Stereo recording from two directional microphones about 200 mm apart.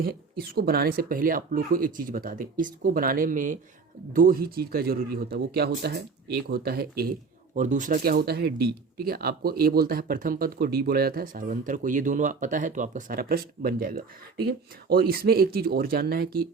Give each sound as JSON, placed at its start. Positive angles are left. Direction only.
{"t": 0.0, "sound": "speech", "side_deg": -50}
{"t": 7.5, "sound": "speech", "side_deg": -40}